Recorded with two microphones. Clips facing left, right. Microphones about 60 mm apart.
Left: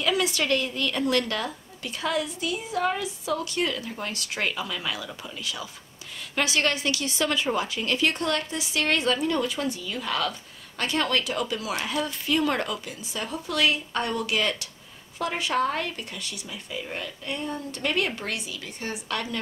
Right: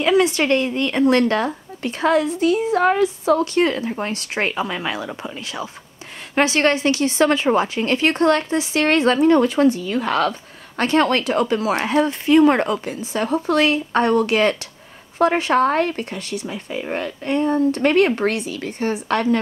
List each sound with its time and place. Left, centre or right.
0.0 s speech: right